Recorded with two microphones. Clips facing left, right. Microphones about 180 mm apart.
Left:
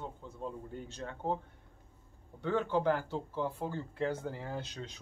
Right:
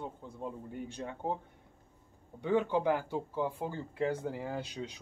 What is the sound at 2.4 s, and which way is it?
Speech, 15° right (ahead or behind).